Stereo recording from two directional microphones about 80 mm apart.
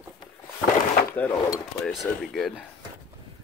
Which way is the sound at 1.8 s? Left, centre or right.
Centre.